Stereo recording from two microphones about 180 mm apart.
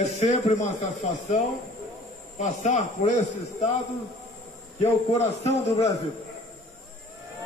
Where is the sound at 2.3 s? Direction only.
40° left (ahead or behind).